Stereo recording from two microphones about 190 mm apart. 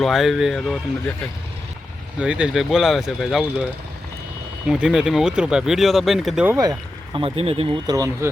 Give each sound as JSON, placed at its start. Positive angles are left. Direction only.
{"t": 0.0, "sound": "speech", "side_deg": 0}
{"t": 2.1, "sound": "speech", "side_deg": -5}
{"t": 4.7, "sound": "speech", "side_deg": -5}
{"t": 6.6, "sound": "speech", "side_deg": -20}